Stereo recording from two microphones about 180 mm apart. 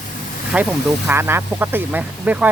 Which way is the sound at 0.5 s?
10° right (ahead or behind).